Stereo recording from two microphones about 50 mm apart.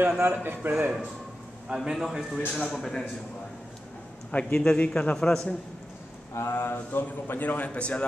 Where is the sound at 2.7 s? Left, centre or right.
Centre.